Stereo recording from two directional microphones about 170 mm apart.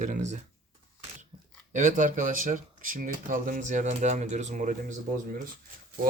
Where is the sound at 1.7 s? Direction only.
50° right (ahead or behind).